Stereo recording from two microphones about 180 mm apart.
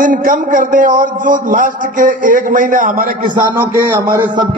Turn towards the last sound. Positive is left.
turn(degrees=-25)  # may be behind; listen again after turning